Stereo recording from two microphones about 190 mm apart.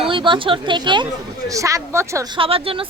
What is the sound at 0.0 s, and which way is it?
A woman's voice, 25° right (ahead or behind).